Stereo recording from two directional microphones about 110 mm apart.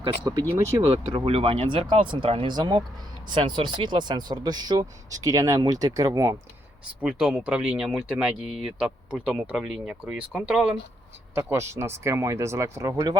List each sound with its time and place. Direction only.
0.0 s speech: 40° right (ahead or behind)
0.8 s speech: 55° right (ahead or behind); by 6.3 s 30° right (ahead or behind)
7.0 s speech: 10° right (ahead or behind)
11.3 s speech: 25° right (ahead or behind)